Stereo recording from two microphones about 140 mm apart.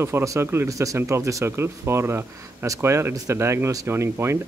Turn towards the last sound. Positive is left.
turn(degrees=-20)  # may be behind; listen again after turning